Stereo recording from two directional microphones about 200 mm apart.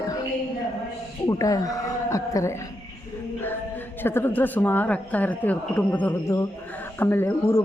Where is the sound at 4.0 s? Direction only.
10° left (ahead or behind).